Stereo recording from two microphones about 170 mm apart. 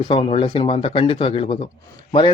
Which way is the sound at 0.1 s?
35° left (ahead or behind).